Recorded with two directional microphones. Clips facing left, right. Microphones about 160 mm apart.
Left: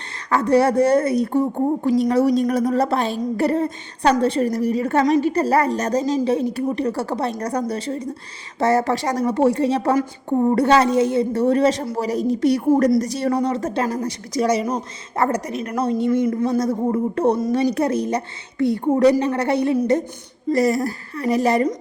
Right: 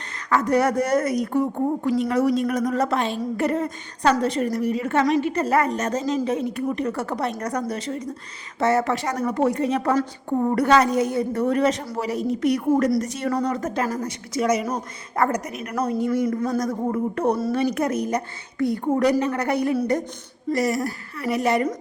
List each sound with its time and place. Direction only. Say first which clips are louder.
0.3 s a woman's voice: left 3 dB; 30° left (ahead or behind)
9.9 s a woman's voice: left 3 dB; 15° left (ahead or behind)
10.5 s a woman's voice: left 2 dB; 30° left (ahead or behind)